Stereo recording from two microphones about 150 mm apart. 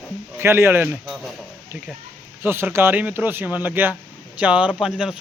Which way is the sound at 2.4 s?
15° right (ahead or behind).